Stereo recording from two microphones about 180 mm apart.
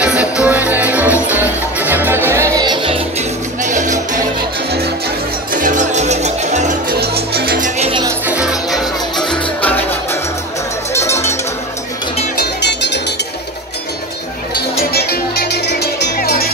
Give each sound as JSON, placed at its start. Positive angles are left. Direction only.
{"t": 0.0, "sound": "music", "side_deg": -5}
{"t": 5.5, "sound": "music", "side_deg": -45}
{"t": 7.0, "sound": "salsa music", "side_deg": -60}
{"t": 8.3, "sound": "music", "side_deg": -5}
{"t": 10.9, "sound": "cowbell", "side_deg": 15}
{"t": 12.4, "sound": "music", "side_deg": 70}
{"t": 14.8, "sound": "music", "side_deg": 60}